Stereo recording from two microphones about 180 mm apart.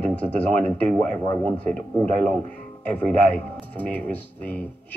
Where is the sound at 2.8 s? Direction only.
5° left (ahead or behind).